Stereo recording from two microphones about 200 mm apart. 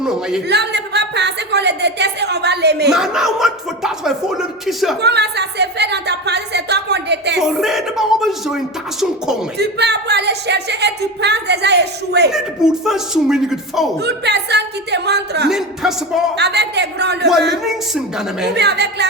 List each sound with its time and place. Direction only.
0.0 s speech: centre (ahead or behind)
0.4 s speech: 55° right (ahead or behind)
2.9 s speech: 5° right (ahead or behind)
4.9 s speech: 55° right (ahead or behind)
7.3 s speech: centre (ahead or behind)
9.6 s speech: 55° right (ahead or behind)
12.8 s speech: centre (ahead or behind)
14.0 s speech: 55° right (ahead or behind)
15.4 s speech: centre (ahead or behind)
16.4 s speech: 55° right (ahead or behind)
17.7 s speech: 5° right (ahead or behind)
18.5 s speech: 55° right (ahead or behind)